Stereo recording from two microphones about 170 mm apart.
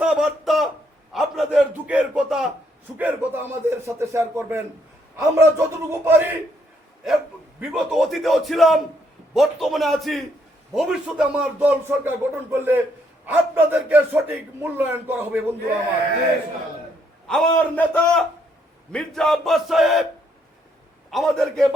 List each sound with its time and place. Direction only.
0.0 s a sound: 5° right (ahead or behind)
3.0 s a man's voice: 10° right (ahead or behind)
7.6 s a man's voice: 5° right (ahead or behind)
17.2 s a man's voice: 5° left (ahead or behind)
21.1 s a man's voice: centre (ahead or behind)